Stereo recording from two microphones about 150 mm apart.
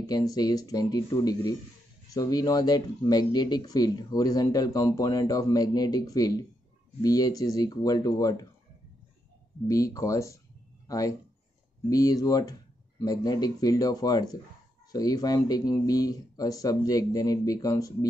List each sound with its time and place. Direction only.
0.0 s speech: 25° left (ahead or behind)
9.7 s speech: 20° left (ahead or behind)